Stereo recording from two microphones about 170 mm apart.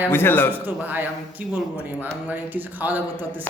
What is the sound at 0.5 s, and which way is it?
Speech, 10° right (ahead or behind).